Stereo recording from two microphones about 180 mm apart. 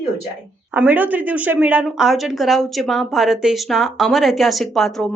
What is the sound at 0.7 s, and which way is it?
Speech, 10° right (ahead or behind).